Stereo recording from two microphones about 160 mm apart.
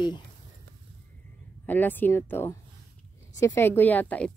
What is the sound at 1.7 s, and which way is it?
A woman's voice, 10° left (ahead or behind).